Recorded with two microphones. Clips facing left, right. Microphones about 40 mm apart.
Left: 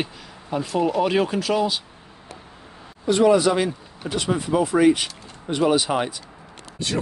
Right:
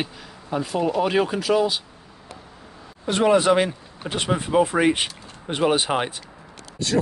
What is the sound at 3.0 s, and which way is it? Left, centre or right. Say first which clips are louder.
Speech: left 1 dB; right.